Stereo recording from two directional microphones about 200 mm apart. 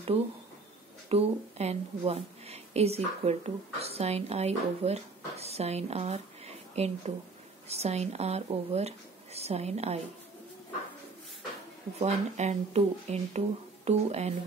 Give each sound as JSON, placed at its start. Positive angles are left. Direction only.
{"t": 1.0, "sound": "a woman's voice", "side_deg": -30}
{"t": 12.0, "sound": "speech", "side_deg": -35}